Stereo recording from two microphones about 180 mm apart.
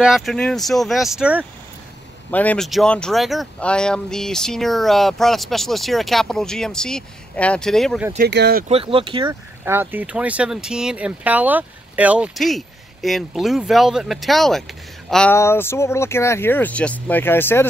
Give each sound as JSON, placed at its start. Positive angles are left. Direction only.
{"t": 0.0, "sound": "speech", "side_deg": 0}
{"t": 2.3, "sound": "speech", "side_deg": 5}
{"t": 8.2, "sound": "speech", "side_deg": -65}
{"t": 8.6, "sound": "speech", "side_deg": -30}
{"t": 9.7, "sound": "speech", "side_deg": -10}
{"t": 15.3, "sound": "speech", "side_deg": 15}